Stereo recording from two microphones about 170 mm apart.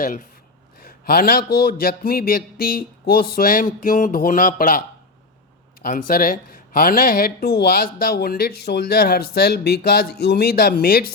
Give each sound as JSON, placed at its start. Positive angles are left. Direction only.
{"t": 0.8, "sound": "speech", "side_deg": 60}
{"t": 5.8, "sound": "speech", "side_deg": 55}